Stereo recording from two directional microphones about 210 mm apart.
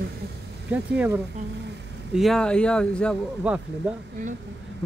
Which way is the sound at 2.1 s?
Centre (ahead or behind).